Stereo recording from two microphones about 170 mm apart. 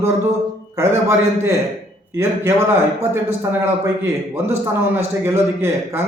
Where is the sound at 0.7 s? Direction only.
15° right (ahead or behind).